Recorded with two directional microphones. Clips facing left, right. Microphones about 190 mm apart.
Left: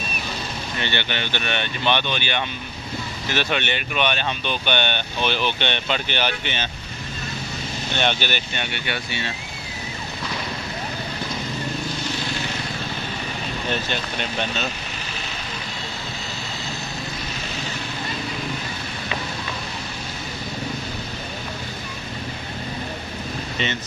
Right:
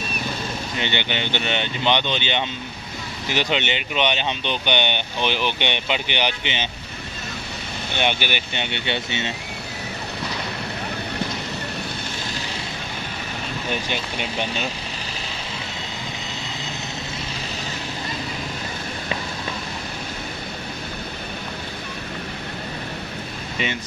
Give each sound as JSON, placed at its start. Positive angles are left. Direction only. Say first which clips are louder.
{"t": 0.7, "sound": "speech", "louder": "right 1 dB", "side_deg": -15}
{"t": 7.9, "sound": "speech", "louder": "even", "side_deg": -10}
{"t": 13.7, "sound": "speech", "louder": "left 1 dB", "side_deg": -10}